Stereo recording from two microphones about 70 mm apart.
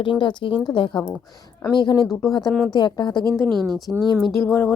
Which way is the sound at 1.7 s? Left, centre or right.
Left.